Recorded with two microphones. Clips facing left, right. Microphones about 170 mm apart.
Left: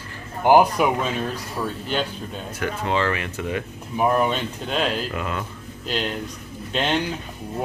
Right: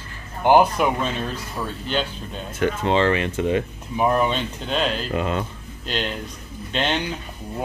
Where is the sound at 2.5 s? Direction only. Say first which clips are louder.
Right 4 dB; 25° right (ahead or behind).